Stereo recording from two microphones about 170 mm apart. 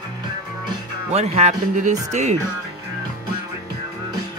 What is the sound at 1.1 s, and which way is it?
Speech, 40° right (ahead or behind).